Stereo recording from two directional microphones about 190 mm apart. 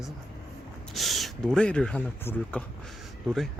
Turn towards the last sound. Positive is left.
turn(degrees=0)  # may be behind; listen again after turning